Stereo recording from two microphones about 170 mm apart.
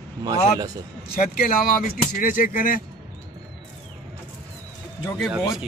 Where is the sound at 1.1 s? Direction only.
60° left (ahead or behind).